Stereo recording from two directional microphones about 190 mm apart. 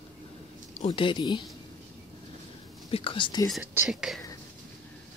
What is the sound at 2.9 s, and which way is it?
Speech, 25° left (ahead or behind).